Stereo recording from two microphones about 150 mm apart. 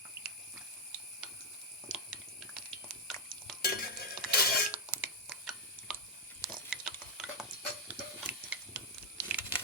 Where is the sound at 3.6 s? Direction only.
90° left.